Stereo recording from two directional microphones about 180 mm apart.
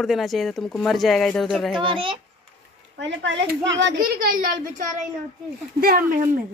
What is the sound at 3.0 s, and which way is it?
Speech, 80° right.